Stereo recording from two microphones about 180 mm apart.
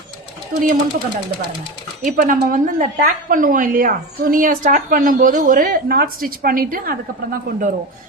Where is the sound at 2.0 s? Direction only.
45° right (ahead or behind).